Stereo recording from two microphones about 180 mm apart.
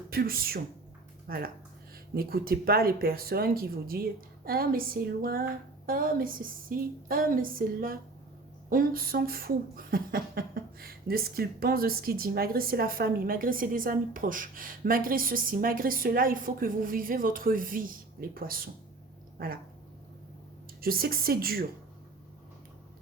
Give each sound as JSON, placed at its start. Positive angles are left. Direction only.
{"t": 0.1, "sound": "speech", "side_deg": -55}
{"t": 20.8, "sound": "speech", "side_deg": -55}